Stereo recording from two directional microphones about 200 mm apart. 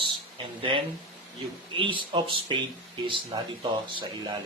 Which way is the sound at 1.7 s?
25° right (ahead or behind).